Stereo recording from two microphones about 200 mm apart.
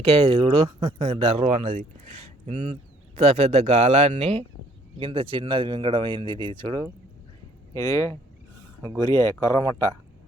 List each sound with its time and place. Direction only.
0.1 s speech: 30° right (ahead or behind)
1.0 s speech: 30° right (ahead or behind)
7.7 s speech: 15° left (ahead or behind)